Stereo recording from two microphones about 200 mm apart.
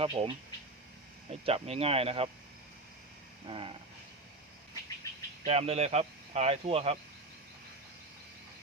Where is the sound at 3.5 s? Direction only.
25° right (ahead or behind).